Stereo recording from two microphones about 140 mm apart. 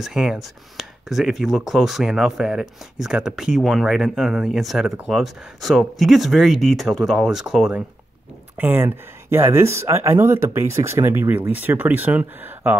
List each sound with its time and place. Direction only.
0.0 s speech: 5° right (ahead or behind)
8.5 s speech: 15° right (ahead or behind)